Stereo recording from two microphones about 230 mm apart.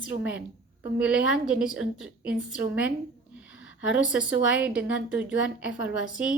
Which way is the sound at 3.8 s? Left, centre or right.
Centre.